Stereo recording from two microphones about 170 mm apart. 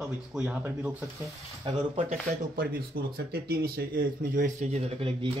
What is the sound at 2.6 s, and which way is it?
Speech, 65° right (ahead or behind).